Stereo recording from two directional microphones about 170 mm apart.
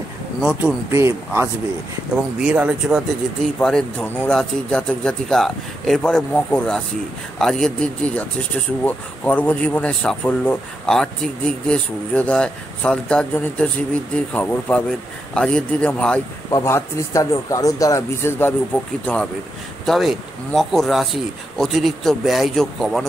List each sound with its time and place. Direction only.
0.4 s a man's voice: 5° right (ahead or behind)
0.9 s speech: 15° right (ahead or behind)
3.5 s a man's voice: 5° left (ahead or behind)
16.4 s speech: 20° left (ahead or behind)
19.9 s a man's voice: centre (ahead or behind)